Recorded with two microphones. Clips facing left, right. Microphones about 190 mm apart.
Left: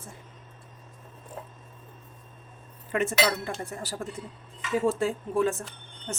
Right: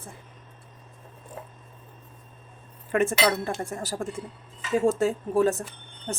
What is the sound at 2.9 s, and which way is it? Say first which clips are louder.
A woman's voice: right 3 dB; 50° right (ahead or behind).